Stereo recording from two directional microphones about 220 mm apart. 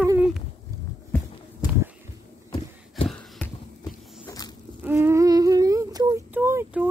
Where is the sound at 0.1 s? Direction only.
5° right (ahead or behind).